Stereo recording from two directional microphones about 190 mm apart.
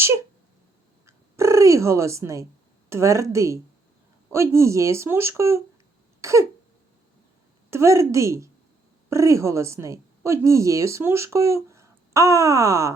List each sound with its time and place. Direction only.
0.0 s a sound: 15° right (ahead or behind)
1.0 s a woman's voice: 15° right (ahead or behind)
7.7 s a woman's voice: 15° right (ahead or behind)